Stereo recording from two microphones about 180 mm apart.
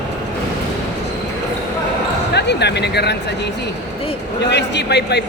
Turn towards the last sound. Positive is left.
turn(degrees=70)  # may be behind; listen again after turning